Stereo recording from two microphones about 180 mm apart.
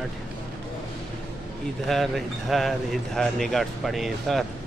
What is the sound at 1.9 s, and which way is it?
Speech, centre (ahead or behind).